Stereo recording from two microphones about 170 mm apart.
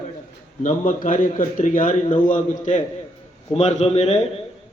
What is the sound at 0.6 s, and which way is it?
A man's voice, 50° left (ahead or behind).